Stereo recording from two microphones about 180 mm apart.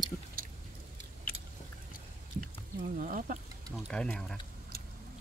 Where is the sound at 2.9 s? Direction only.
50° right (ahead or behind).